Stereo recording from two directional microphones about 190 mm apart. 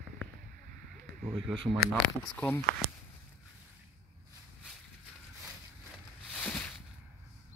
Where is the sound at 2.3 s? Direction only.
10° left (ahead or behind).